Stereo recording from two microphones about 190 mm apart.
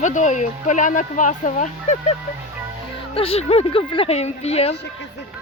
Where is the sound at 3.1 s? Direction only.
30° left (ahead or behind).